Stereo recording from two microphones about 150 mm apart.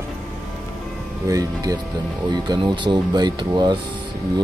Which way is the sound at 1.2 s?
25° right (ahead or behind).